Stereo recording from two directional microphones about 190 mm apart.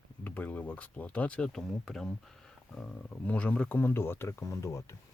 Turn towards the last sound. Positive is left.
turn(degrees=15)  # may be behind; listen again after turning